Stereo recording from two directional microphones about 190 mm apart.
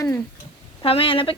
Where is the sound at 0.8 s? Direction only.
30° left (ahead or behind).